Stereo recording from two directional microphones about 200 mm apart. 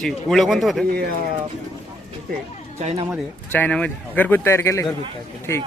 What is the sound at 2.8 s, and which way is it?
Speech, 35° right (ahead or behind).